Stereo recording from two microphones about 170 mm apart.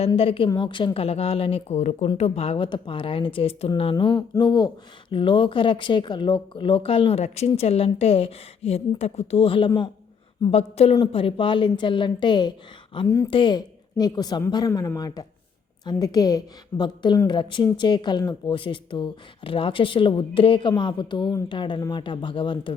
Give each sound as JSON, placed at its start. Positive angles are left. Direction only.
{"t": 0.2, "sound": "speech", "side_deg": 35}
{"t": 10.5, "sound": "speech", "side_deg": 40}
{"t": 13.1, "sound": "speech", "side_deg": 15}
{"t": 13.3, "sound": "a woman's voice", "side_deg": 25}